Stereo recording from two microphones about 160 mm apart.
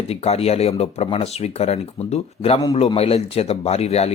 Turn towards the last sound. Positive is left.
turn(degrees=40)  # may be behind; listen again after turning